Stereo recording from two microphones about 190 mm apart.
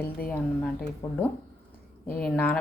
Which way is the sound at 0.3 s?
5° left (ahead or behind).